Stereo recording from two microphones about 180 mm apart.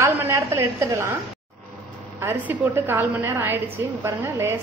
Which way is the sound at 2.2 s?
15° right (ahead or behind).